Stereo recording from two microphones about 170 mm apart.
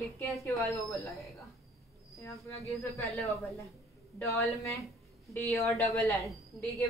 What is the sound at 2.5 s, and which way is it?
Speech, 35° left (ahead or behind).